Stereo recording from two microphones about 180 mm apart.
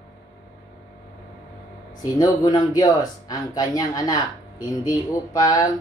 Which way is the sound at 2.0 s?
20° left (ahead or behind).